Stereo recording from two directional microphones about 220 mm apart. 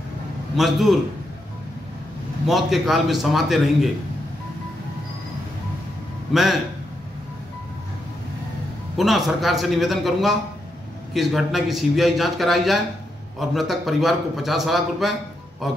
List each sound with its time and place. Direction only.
0.6 s a man's voice: centre (ahead or behind)
2.4 s a man's voice: centre (ahead or behind)
6.3 s a man's voice: centre (ahead or behind)
8.9 s a man's voice: centre (ahead or behind)